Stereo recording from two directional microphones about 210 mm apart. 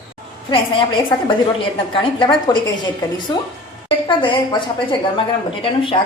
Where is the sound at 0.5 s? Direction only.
25° left (ahead or behind).